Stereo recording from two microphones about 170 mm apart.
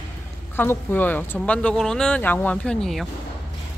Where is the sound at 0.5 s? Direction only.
15° left (ahead or behind).